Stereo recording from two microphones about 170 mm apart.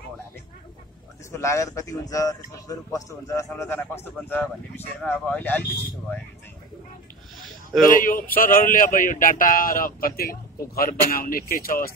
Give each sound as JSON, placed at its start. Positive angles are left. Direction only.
{"t": 1.3, "sound": "a man's voice", "side_deg": 15}
{"t": 7.8, "sound": "speech", "side_deg": 55}